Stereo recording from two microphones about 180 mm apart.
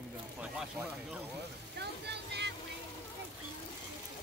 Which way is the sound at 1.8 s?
70° right (ahead or behind).